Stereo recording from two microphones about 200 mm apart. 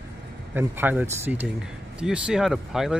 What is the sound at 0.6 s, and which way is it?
Speech, 10° right (ahead or behind).